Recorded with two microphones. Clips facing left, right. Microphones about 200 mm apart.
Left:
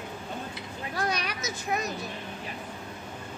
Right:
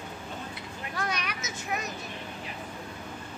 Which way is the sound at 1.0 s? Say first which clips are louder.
Left 3 dB; 35° left (ahead or behind).